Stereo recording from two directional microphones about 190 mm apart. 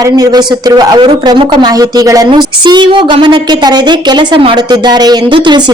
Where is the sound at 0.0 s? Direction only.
20° right (ahead or behind).